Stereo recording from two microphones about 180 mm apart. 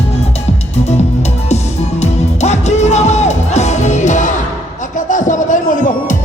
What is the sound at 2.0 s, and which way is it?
Music, 40° left (ahead or behind).